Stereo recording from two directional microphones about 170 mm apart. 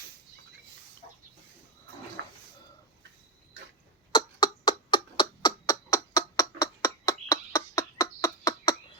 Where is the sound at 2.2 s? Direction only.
85° right.